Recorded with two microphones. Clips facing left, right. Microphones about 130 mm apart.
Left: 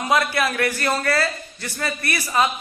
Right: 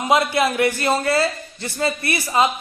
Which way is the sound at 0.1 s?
20° right (ahead or behind).